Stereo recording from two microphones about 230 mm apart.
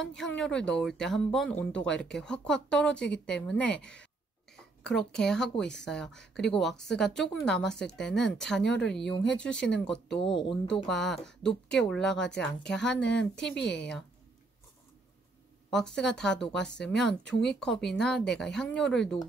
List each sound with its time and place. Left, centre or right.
0.1 s speech: centre
10.2 s speech: left
10.7 s speech: centre
13.6 s speech: left
15.7 s speech: centre